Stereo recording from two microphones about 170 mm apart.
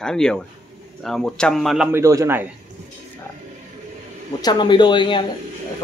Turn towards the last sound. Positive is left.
turn(degrees=30)  # may be behind; listen again after turning